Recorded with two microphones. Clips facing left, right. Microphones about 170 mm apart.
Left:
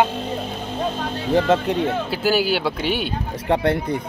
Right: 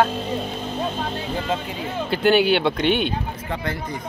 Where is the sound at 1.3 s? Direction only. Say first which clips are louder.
Left 12 dB; 75° left (ahead or behind).